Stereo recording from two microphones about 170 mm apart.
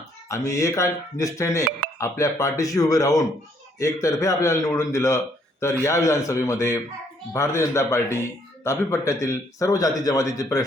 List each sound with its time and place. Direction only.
0.3 s a man's voice: 15° left (ahead or behind)